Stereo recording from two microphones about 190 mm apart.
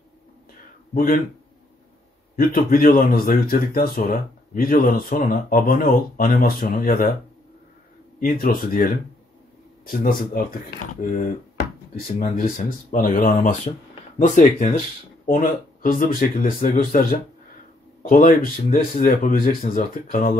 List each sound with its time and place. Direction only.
0.9 s speech: 50° left (ahead or behind)
2.3 s speech: 50° left (ahead or behind)
8.2 s speech: 50° left (ahead or behind)